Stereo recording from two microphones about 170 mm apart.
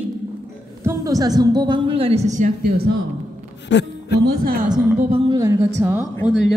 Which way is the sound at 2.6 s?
65° right (ahead or behind).